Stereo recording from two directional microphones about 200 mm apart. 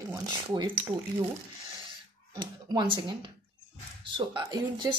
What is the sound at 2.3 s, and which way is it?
A woman's voice, 20° right (ahead or behind).